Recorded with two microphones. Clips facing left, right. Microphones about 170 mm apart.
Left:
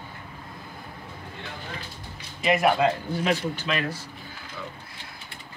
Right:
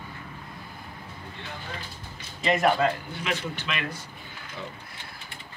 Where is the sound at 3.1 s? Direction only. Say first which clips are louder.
Left 6 dB; 40° left (ahead or behind).